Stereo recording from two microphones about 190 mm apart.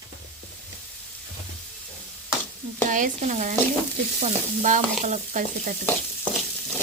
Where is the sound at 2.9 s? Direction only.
45° right (ahead or behind).